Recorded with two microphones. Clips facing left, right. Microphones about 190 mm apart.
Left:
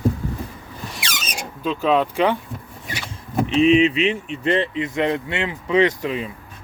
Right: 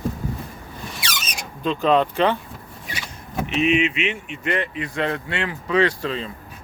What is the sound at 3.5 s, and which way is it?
Speech, 35° left (ahead or behind).